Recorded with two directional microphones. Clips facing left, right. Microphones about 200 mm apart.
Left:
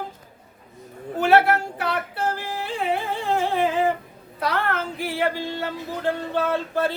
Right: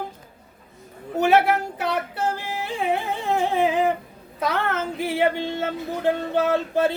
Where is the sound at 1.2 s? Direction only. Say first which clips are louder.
Even; 20° right (ahead or behind).